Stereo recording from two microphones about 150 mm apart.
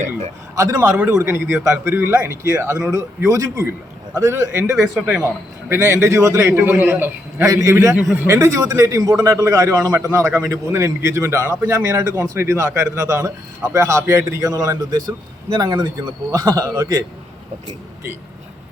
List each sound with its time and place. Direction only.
0.5 s a man's voice: 20° right (ahead or behind)
0.9 s a man's voice: 10° right (ahead or behind)
4.9 s a man's voice: 5° right (ahead or behind)
5.6 s a man's voice: 15° right (ahead or behind)
7.9 s a man's voice: 10° right (ahead or behind)